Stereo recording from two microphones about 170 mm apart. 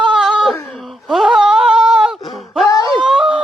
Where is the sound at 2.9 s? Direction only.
5° right (ahead or behind).